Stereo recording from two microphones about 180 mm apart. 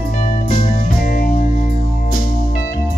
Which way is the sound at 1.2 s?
50° left (ahead or behind).